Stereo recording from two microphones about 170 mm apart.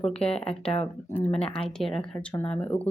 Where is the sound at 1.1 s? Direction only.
5° left (ahead or behind).